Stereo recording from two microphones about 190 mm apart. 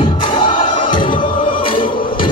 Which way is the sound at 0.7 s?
25° left (ahead or behind).